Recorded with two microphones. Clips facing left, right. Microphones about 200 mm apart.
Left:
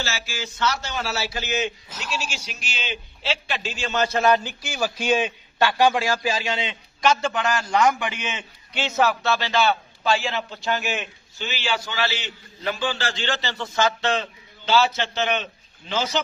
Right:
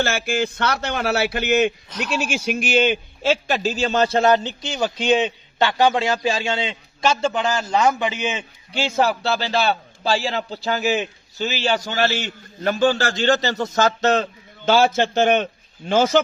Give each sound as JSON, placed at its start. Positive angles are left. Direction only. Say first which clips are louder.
{"t": 0.0, "sound": "a man's voice", "louder": "right 10 dB", "side_deg": -55}